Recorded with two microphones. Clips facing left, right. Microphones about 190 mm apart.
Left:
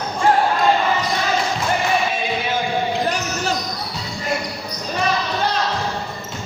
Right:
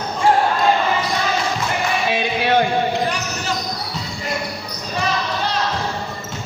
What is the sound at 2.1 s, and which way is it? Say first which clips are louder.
Music: right 5 dB; 65° right (ahead or behind).